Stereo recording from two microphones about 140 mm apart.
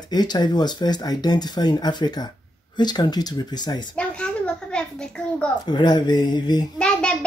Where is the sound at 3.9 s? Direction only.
5° left (ahead or behind).